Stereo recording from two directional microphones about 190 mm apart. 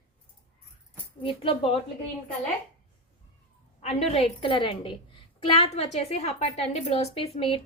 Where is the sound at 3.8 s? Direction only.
35° left (ahead or behind).